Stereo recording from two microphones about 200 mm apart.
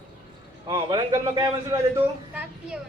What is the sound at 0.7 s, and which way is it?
Speech, 20° right (ahead or behind).